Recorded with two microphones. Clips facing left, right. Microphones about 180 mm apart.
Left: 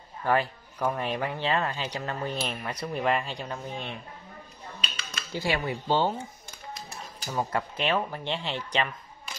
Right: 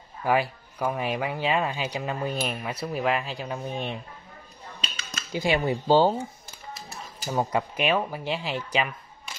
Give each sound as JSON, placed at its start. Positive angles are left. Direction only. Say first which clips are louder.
{"t": 0.2, "sound": "speech", "louder": "right 2 dB", "side_deg": -10}
{"t": 5.3, "sound": "speech", "louder": "right 5 dB", "side_deg": -20}
{"t": 5.9, "sound": "speech", "louder": "right 6 dB", "side_deg": -35}
{"t": 7.2, "sound": "speech", "louder": "right 4 dB", "side_deg": -20}
{"t": 8.7, "sound": "shuffling cards", "louder": "even", "side_deg": -10}